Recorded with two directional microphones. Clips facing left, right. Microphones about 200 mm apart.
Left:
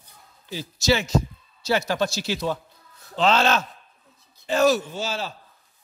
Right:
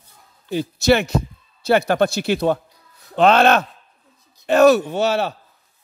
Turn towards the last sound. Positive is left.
turn(degrees=-65)  # may be behind; listen again after turning